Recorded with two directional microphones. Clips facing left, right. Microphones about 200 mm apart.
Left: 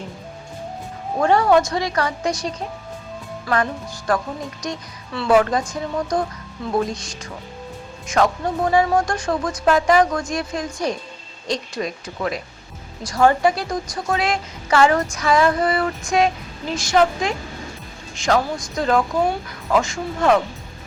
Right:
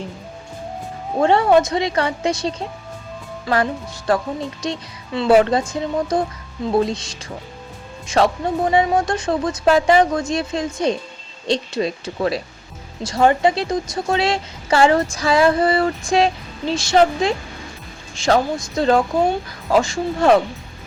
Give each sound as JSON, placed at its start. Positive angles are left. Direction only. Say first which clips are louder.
{"t": 1.2, "sound": "a woman's voice", "louder": "right 2 dB", "side_deg": -25}